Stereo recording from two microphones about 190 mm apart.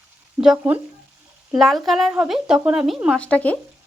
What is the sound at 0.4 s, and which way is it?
Speech, 5° right (ahead or behind).